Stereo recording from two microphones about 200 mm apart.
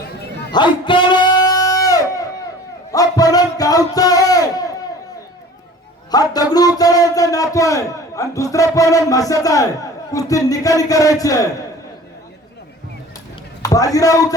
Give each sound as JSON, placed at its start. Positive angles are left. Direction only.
{"t": 0.5, "sound": "a sound", "side_deg": 25}
{"t": 6.1, "sound": "a man's voice", "side_deg": 20}
{"t": 13.6, "sound": "a man's voice", "side_deg": 15}